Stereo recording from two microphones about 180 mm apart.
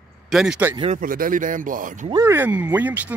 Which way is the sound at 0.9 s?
50° right (ahead or behind).